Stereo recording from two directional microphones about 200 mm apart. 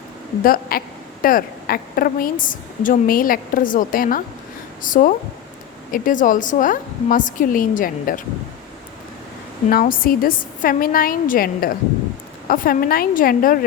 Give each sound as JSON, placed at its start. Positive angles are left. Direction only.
{"t": 0.4, "sound": "a woman's voice", "side_deg": 45}
{"t": 9.6, "sound": "a woman's voice", "side_deg": 45}